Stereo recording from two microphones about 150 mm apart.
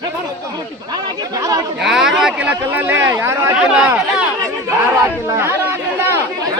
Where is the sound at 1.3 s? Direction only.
25° right (ahead or behind).